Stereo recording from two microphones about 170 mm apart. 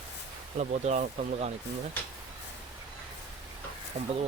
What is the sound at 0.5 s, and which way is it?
Speech, 45° right (ahead or behind).